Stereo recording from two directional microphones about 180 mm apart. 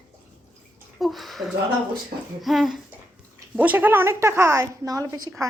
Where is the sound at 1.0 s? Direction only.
Centre (ahead or behind).